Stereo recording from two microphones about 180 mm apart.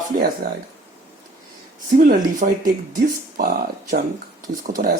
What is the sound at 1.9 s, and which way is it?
Speech, 50° right (ahead or behind).